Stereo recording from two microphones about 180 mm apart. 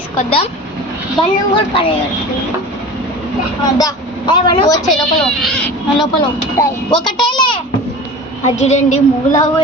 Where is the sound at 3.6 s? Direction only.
20° left (ahead or behind).